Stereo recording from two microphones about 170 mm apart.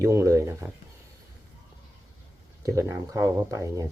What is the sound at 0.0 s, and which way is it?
Speech, 20° right (ahead or behind).